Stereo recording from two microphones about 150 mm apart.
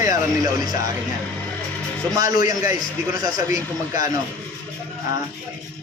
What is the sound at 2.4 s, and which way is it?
A man's voice, 25° right (ahead or behind).